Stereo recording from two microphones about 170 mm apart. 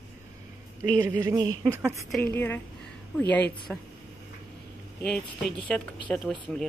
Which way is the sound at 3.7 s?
Centre (ahead or behind).